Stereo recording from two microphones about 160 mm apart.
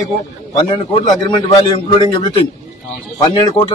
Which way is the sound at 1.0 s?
30° left (ahead or behind).